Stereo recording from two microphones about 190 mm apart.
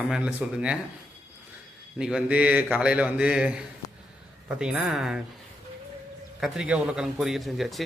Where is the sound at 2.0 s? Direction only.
5° right (ahead or behind).